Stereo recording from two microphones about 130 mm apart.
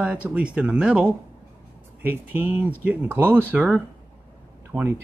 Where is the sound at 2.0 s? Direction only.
15° right (ahead or behind).